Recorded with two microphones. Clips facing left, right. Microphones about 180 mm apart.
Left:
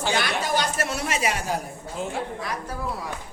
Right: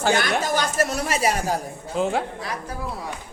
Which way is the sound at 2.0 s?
90° right.